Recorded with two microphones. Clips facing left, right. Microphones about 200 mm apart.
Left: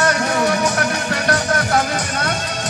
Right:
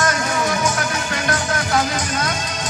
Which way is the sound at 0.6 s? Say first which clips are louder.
Left 3 dB; 35° left (ahead or behind).